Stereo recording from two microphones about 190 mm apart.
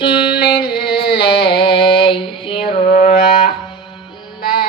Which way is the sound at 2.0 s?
25° left (ahead or behind).